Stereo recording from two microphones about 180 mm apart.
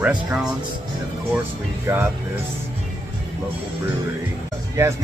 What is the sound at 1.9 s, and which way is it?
Speech, 15° right (ahead or behind).